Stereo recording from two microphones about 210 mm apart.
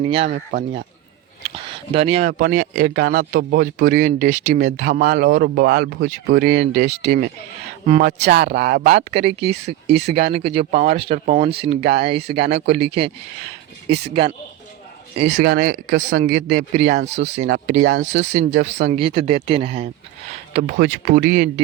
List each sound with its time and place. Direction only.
0.0 s speech: 30° right (ahead or behind)
2.4 s a man's voice: 40° right (ahead or behind)
8.9 s speech: 30° right (ahead or behind)
11.8 s a man's voice: 50° right (ahead or behind)
12.5 s speech: 30° right (ahead or behind)
14.1 s speech: 25° right (ahead or behind)
15.2 s a man's voice: 50° right (ahead or behind); by 19.9 s 25° right (ahead or behind)
20.7 s a man's voice: 45° right (ahead or behind)